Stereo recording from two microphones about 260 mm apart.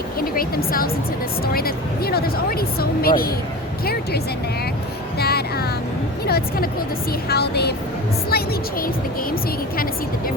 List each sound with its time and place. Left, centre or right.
0.2 s a woman's voice: left
5.2 s music: left
6.2 s speech: left